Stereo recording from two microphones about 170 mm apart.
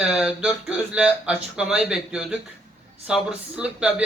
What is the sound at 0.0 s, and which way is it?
A man's voice, 5° right (ahead or behind).